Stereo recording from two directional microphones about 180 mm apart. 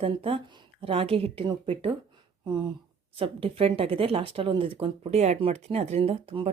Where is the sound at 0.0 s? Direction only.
30° right (ahead or behind).